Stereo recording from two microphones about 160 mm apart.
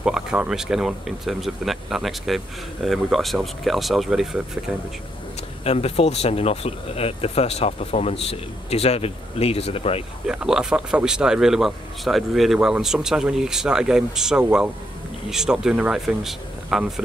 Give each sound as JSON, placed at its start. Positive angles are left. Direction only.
{"t": 0.0, "sound": "speech", "side_deg": -5}
{"t": 5.6, "sound": "speech", "side_deg": 40}
{"t": 10.2, "sound": "speech", "side_deg": -5}